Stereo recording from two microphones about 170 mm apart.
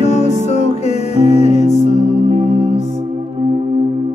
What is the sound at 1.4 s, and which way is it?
Music, 40° left (ahead or behind).